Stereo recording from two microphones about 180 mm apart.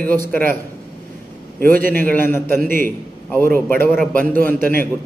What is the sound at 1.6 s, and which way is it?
Speech, 50° right (ahead or behind).